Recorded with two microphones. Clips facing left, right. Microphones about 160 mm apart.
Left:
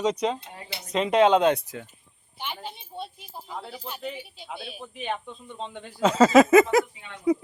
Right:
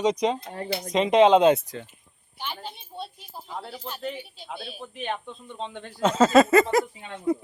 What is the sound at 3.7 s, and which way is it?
Speech, 10° left (ahead or behind).